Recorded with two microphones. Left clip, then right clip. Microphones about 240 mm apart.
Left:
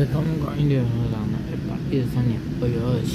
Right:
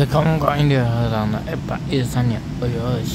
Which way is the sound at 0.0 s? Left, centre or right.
Right.